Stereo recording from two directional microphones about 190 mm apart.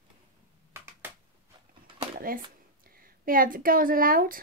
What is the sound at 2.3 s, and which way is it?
A woman's voice, 50° right (ahead or behind).